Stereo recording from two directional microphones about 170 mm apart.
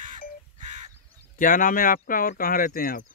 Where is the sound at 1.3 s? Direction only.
55° left (ahead or behind).